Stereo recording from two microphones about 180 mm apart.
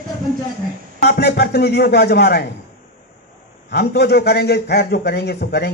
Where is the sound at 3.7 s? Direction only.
65° left (ahead or behind).